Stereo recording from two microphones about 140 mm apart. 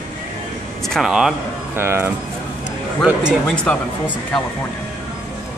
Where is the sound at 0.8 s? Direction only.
Centre (ahead or behind).